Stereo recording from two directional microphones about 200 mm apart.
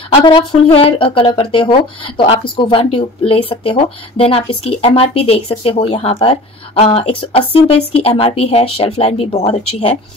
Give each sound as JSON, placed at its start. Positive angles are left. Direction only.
{"t": 0.1, "sound": "speech", "side_deg": 25}